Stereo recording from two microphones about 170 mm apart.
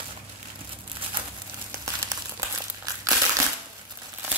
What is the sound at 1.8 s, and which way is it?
Crumpling, 20° right (ahead or behind).